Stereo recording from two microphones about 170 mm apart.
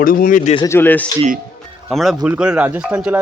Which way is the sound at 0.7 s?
10° left (ahead or behind).